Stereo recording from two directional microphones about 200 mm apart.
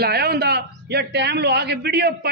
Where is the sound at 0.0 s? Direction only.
50° right (ahead or behind).